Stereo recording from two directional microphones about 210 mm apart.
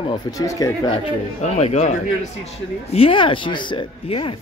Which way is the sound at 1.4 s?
35° left (ahead or behind).